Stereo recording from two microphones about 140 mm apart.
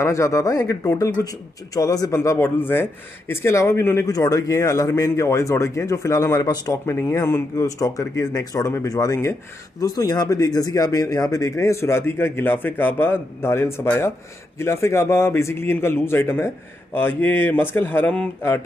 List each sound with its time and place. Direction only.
0.0 s a man's voice: 20° left (ahead or behind)